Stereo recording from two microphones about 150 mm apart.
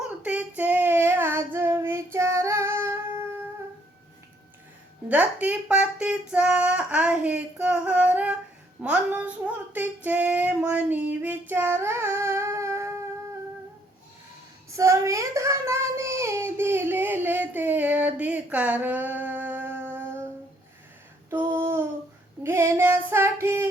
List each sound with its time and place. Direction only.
0.0 s child singing: 10° right (ahead or behind)
5.0 s female singing: 10° right (ahead or behind)
14.7 s child singing: 20° right (ahead or behind)
21.2 s a sound: 15° right (ahead or behind)
22.4 s female singing: 15° right (ahead or behind)